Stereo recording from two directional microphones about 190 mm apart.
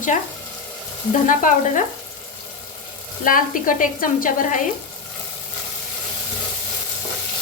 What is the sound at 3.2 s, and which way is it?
Speech, 45° left (ahead or behind).